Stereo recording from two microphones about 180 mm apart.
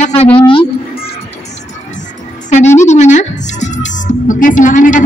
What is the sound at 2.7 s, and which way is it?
Music, 40° left (ahead or behind).